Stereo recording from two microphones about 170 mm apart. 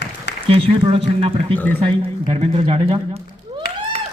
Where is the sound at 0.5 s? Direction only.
35° right (ahead or behind).